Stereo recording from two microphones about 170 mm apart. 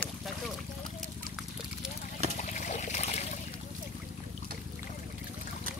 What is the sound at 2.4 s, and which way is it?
Trickle, 45° left (ahead or behind).